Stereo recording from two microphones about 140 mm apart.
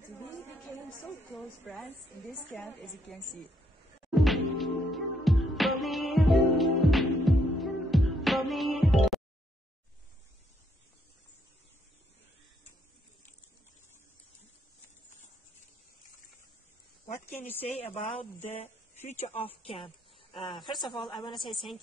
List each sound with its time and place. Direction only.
0.7 s a sound: 15° left (ahead or behind)
1.7 s a woman's voice: centre (ahead or behind)
4.1 s music: centre (ahead or behind)
17.4 s speech: 15° left (ahead or behind)
17.9 s speech: 45° left (ahead or behind)